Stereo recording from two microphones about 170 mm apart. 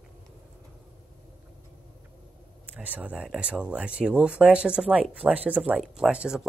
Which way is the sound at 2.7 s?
10° right (ahead or behind).